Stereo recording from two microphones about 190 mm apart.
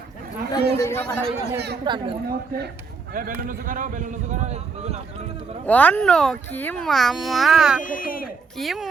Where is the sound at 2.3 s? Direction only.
55° right (ahead or behind); by 5.3 s 35° right (ahead or behind).